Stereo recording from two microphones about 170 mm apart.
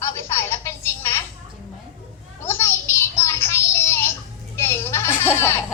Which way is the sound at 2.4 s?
15° left (ahead or behind).